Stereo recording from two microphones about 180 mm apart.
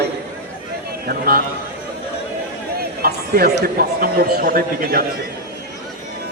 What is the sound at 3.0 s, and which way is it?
A man's voice, 55° right (ahead or behind).